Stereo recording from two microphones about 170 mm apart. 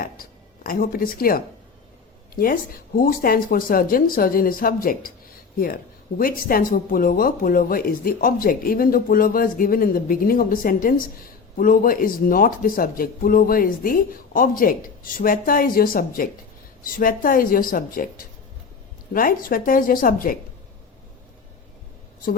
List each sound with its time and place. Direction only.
0.0 s a sound: 60° left (ahead or behind)
2.3 s speech: 60° left (ahead or behind)
19.1 s speech: 55° left (ahead or behind)